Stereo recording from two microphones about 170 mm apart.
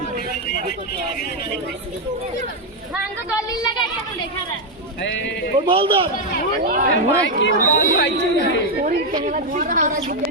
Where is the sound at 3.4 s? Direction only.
25° left (ahead or behind).